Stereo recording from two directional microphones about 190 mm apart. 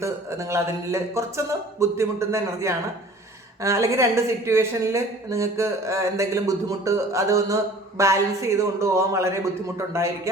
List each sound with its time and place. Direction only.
0.0 s a woman's voice: 15° right (ahead or behind)